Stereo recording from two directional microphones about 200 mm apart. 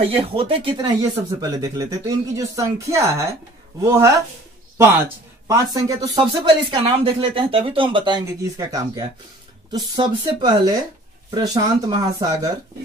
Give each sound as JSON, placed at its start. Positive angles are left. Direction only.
{"t": 0.0, "sound": "speech", "side_deg": -25}
{"t": 5.5, "sound": "speech", "side_deg": -15}